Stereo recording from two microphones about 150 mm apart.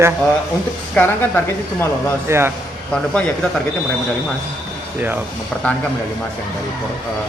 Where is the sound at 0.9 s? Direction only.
15° left (ahead or behind).